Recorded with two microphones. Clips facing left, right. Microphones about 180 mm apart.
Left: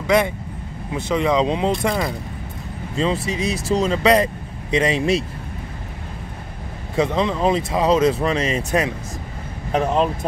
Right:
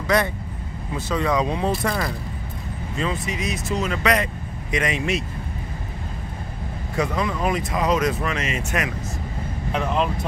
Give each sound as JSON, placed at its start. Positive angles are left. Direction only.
{"t": 0.0, "sound": "speech", "side_deg": 20}
{"t": 7.0, "sound": "speech", "side_deg": 25}